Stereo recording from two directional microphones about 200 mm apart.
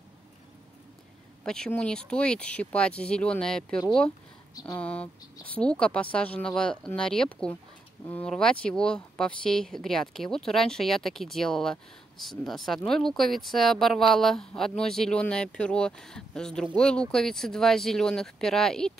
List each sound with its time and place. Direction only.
1.4 s speech: 5° left (ahead or behind)
4.6 s speech: 15° left (ahead or behind)
4.8 s speech: 5° left (ahead or behind)